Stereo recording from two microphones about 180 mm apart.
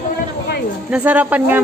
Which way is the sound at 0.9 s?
10° right (ahead or behind).